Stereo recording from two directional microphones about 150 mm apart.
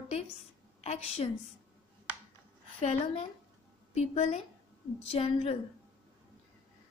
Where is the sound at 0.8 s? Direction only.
45° left (ahead or behind).